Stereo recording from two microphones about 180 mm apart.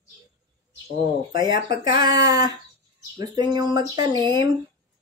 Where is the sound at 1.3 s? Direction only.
25° right (ahead or behind).